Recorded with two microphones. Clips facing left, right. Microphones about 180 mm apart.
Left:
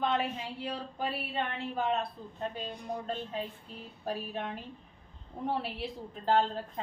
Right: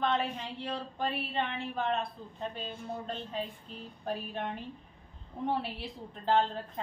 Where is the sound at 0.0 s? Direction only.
5° left (ahead or behind).